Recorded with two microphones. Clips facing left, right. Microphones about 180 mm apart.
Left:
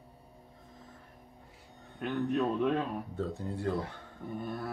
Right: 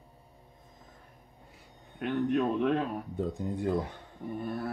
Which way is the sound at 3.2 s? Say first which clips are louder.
Right 3 dB; 15° right (ahead or behind).